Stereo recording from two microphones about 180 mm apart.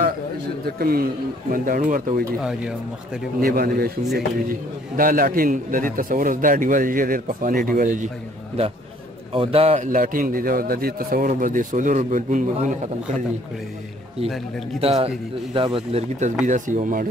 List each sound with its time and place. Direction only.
0.7 s a man's voice: 55° right (ahead or behind)
3.3 s a man's voice: 55° right (ahead or behind)
4.9 s speech: 50° right (ahead or behind)
9.3 s speech: 30° right (ahead or behind)
9.8 s speech: 50° right (ahead or behind)
14.8 s speech: 35° right (ahead or behind)